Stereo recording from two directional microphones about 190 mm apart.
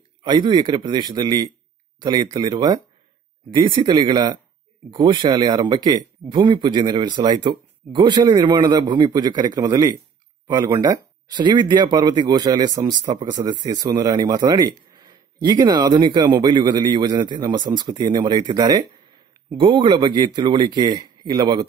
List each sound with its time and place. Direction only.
0.2 s speech: 25° right (ahead or behind)